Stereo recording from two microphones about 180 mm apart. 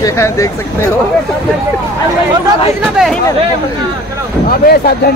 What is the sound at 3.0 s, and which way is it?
Speech, 5° right (ahead or behind).